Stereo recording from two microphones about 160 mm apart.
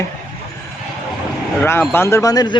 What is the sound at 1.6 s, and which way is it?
Speech, 15° left (ahead or behind).